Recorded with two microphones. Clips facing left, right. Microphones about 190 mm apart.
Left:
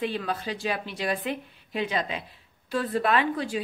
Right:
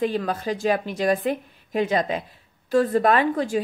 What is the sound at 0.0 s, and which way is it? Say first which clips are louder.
A woman's voice: right 5 dB; 45° right (ahead or behind).